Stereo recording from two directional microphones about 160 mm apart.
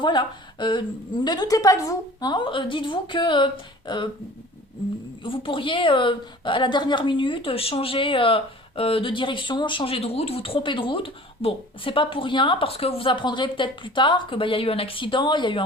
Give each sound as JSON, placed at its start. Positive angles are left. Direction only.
{"t": 0.0, "sound": "a woman's voice", "side_deg": 30}
{"t": 5.2, "sound": "a woman's voice", "side_deg": 30}